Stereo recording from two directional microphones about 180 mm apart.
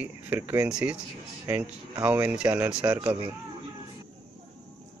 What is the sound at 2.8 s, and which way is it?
Speech, 20° right (ahead or behind).